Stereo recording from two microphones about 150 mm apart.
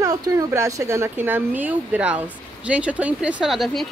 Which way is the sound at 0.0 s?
25° right (ahead or behind).